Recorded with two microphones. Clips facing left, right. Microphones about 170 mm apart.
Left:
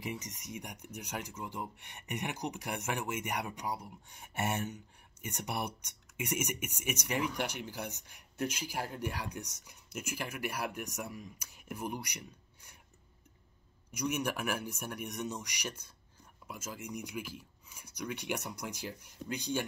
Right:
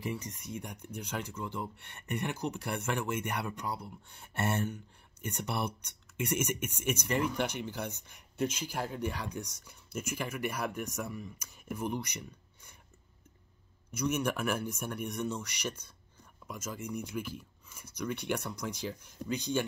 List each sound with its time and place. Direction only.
0.0 s speech: 15° left (ahead or behind)
13.9 s speech: 10° left (ahead or behind)